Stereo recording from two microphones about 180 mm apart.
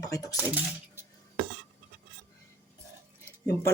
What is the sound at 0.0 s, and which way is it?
Speech, 20° left (ahead or behind).